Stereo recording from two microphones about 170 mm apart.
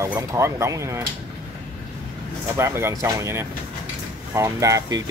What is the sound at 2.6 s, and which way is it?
Speech, 15° right (ahead or behind).